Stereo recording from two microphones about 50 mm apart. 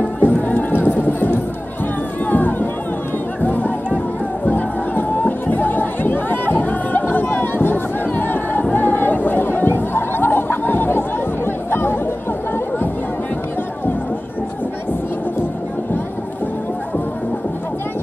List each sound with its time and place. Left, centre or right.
0.2 s music: left
2.2 s a sound: left
3.3 s music: left
8.7 s chatter: left